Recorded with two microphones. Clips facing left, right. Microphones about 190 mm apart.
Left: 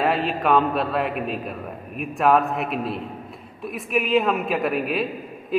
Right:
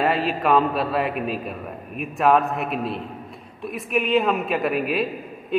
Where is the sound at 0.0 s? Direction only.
Centre (ahead or behind).